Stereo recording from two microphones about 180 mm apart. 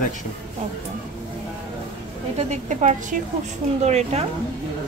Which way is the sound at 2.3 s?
40° right (ahead or behind).